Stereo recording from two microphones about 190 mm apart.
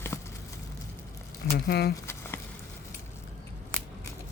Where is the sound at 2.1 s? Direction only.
15° left (ahead or behind).